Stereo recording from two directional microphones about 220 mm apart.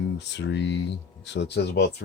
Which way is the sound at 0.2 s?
50° left (ahead or behind).